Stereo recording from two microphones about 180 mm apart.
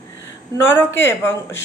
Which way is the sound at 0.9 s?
15° left (ahead or behind).